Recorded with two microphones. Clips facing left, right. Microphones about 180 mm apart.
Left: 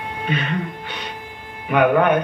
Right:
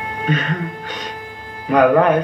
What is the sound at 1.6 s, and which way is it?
Speech, 35° right (ahead or behind).